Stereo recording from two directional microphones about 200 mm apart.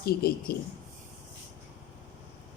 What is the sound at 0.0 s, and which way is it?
Speech, 50° left (ahead or behind).